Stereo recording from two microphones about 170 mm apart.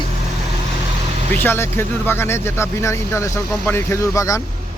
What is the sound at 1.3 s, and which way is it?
Speech, 15° left (ahead or behind).